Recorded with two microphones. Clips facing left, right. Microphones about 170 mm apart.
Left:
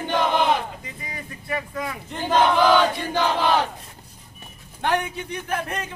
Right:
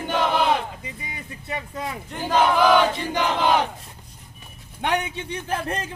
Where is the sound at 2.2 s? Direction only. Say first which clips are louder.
Even; 10° right (ahead or behind).